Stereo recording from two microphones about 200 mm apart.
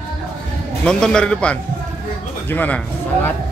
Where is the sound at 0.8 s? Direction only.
5° left (ahead or behind).